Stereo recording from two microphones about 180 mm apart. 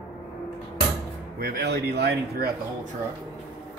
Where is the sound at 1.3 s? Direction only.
60° right (ahead or behind).